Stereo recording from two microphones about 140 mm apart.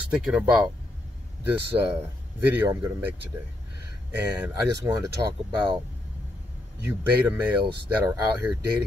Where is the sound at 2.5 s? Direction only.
15° right (ahead or behind).